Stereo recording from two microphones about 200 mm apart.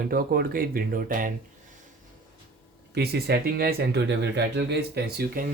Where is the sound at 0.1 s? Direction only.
50° right (ahead or behind).